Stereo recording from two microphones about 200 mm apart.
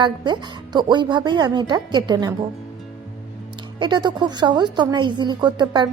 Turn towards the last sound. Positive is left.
turn(degrees=-20)  # may be behind; listen again after turning